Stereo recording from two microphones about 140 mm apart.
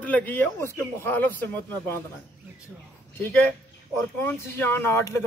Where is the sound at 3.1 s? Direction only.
15° left (ahead or behind).